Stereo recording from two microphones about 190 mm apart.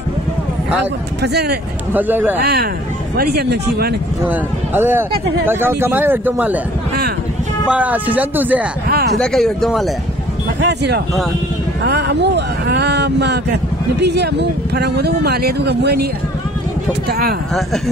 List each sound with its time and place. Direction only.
1.2 s speech: 60° right (ahead or behind)
2.0 s speech: 10° right (ahead or behind)
2.4 s speech: 55° right (ahead or behind)
4.3 s speech: 10° right (ahead or behind)
7.7 s speech: 10° right (ahead or behind)
8.8 s a sound: 55° right (ahead or behind)
9.2 s speech: 5° left (ahead or behind)
10.6 s speech: 60° right (ahead or behind)